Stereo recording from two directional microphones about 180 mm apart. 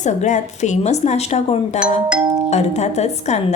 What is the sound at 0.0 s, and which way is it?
A woman's voice, 40° left (ahead or behind).